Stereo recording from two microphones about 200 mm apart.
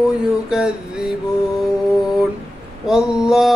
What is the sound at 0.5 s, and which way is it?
Music, 5° right (ahead or behind).